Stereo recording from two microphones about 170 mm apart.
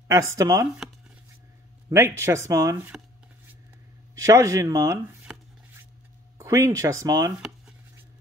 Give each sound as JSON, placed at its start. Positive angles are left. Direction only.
{"t": 0.1, "sound": "speech", "side_deg": -15}
{"t": 1.9, "sound": "speech", "side_deg": -15}
{"t": 4.1, "sound": "speech", "side_deg": -20}
{"t": 6.3, "sound": "speech", "side_deg": -15}
{"t": 7.3, "sound": "a sound", "side_deg": -5}